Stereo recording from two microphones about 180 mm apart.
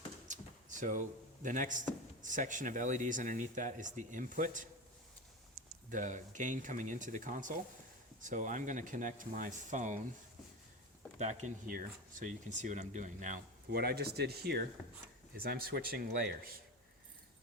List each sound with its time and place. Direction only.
0.3 s a sound: 45° right (ahead or behind)
2.2 s speech: 45° right (ahead or behind)
5.9 s speech: 45° right (ahead or behind)
11.2 s speech: 40° right (ahead or behind)